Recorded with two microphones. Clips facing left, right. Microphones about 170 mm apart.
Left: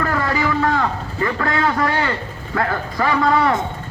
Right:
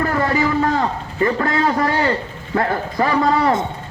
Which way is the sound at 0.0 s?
30° right (ahead or behind).